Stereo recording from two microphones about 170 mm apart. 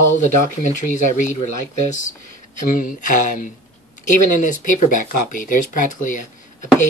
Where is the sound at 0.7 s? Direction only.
45° left (ahead or behind).